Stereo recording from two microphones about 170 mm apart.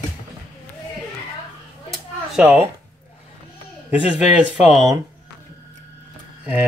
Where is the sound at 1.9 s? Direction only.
5° right (ahead or behind).